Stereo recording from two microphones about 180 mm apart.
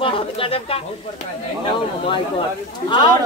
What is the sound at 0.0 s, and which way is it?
Speech, 30° left (ahead or behind).